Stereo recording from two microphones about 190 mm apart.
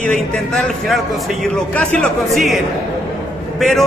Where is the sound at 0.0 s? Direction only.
5° left (ahead or behind).